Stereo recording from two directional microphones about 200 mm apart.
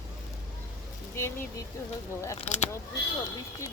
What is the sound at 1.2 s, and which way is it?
Speech, 15° left (ahead or behind).